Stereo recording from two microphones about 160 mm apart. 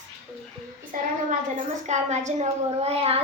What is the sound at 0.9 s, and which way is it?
A child's voice, 55° right (ahead or behind).